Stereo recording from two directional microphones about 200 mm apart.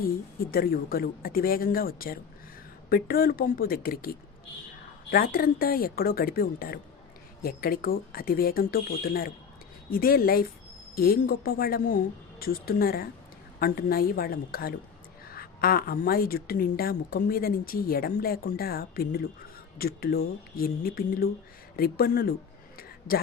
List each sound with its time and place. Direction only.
0.5 s a woman's voice: 50° left (ahead or behind)
5.1 s a woman's voice: 50° left (ahead or behind)
22.8 s a sound: 50° left (ahead or behind)